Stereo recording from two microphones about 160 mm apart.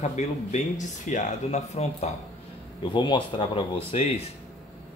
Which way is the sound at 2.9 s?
30° left (ahead or behind).